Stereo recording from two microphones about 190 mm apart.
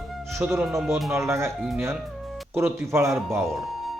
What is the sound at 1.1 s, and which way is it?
Speech, 15° right (ahead or behind).